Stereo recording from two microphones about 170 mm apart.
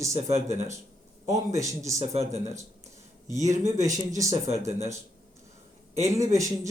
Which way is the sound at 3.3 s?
20° right (ahead or behind).